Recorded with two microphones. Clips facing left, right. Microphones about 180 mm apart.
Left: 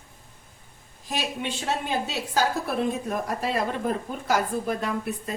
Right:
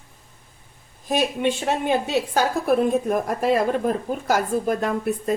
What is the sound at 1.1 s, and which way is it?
A woman's voice, 55° right (ahead or behind).